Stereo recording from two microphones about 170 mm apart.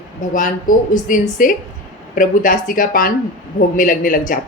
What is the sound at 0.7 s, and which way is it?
A woman's voice, 50° left (ahead or behind).